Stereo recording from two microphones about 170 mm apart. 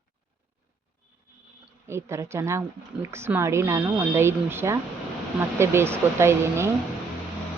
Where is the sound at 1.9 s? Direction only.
15° right (ahead or behind).